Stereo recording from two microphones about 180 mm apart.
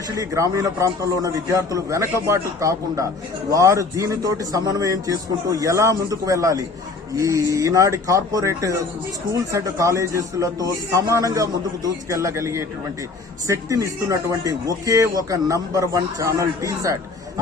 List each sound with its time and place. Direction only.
0.2 s a man's voice: 15° right (ahead or behind)